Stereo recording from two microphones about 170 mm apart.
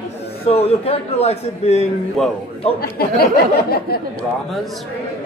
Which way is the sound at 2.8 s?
65° left (ahead or behind).